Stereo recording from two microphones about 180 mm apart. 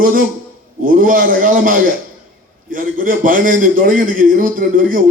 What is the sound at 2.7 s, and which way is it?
A man's voice, 50° right (ahead or behind).